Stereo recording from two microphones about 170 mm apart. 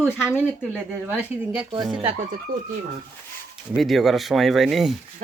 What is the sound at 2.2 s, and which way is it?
Speech, 50° right (ahead or behind).